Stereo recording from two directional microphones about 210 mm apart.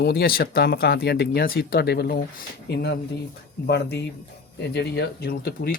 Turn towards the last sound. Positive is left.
turn(degrees=50)  # may be behind; listen again after turning